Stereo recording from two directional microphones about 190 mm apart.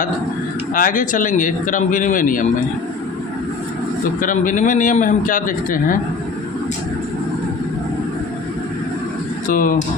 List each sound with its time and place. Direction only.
0.7 s speech: 45° left (ahead or behind)
4.2 s speech: 45° left (ahead or behind)
9.5 s speech: 45° left (ahead or behind)